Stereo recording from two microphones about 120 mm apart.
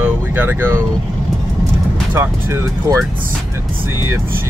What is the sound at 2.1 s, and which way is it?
Speech, 20° right (ahead or behind).